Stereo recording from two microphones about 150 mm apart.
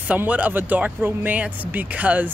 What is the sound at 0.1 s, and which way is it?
Speech, 10° right (ahead or behind).